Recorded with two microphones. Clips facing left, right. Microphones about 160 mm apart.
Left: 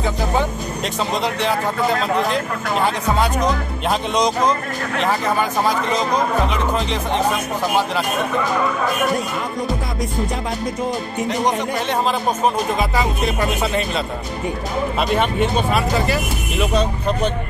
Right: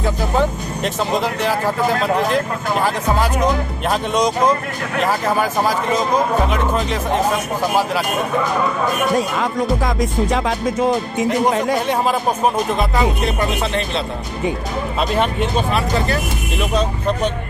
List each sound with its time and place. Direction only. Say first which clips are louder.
0.0 s speech: right 2 dB; centre (ahead or behind)
9.4 s music: right 5 dB; 90° right
11.9 s speech: right 2 dB; 5° right (ahead or behind)